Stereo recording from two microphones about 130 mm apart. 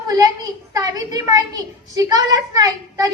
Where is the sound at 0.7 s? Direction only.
30° right (ahead or behind).